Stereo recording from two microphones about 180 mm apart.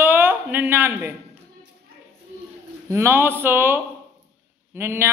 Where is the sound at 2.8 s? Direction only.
15° right (ahead or behind).